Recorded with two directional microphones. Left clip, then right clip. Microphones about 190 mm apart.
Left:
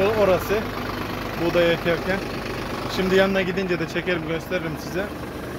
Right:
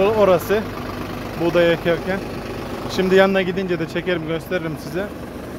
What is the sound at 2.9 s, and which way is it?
Speech, 35° right (ahead or behind).